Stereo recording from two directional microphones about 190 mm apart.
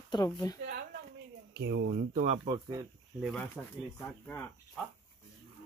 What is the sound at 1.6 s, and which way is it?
Speech, 70° right (ahead or behind).